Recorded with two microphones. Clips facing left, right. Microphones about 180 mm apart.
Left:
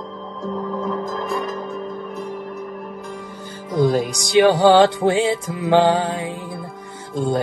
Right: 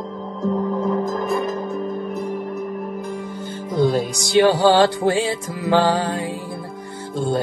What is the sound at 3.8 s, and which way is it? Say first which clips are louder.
Music: left 1 dB; 15° left (ahead or behind).